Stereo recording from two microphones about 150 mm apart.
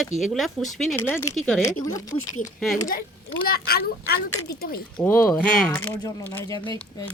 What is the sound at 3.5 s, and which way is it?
A child's voice, 90° left.